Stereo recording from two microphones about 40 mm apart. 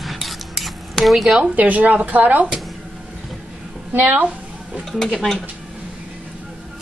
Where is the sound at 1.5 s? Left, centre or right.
Right.